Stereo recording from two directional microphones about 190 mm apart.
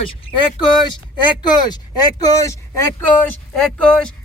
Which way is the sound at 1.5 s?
20° left (ahead or behind).